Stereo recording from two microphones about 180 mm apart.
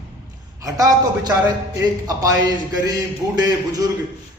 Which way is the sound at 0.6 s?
20° right (ahead or behind).